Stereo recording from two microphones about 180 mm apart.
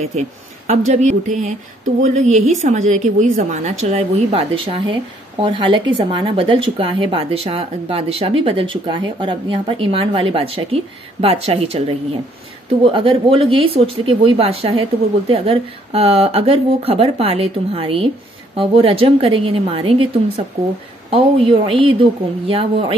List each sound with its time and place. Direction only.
0.7 s a woman's voice: 40° right (ahead or behind)